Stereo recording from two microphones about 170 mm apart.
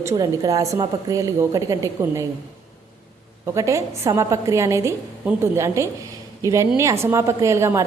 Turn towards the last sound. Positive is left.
turn(degrees=-15)  # may be behind; listen again after turning